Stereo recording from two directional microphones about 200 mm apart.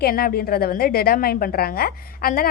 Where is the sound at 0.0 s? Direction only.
50° left (ahead or behind).